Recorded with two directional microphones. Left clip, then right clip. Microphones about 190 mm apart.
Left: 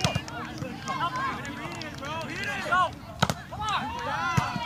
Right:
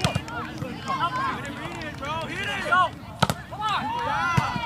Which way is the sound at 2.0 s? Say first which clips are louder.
Right 4 dB; 20° right (ahead or behind).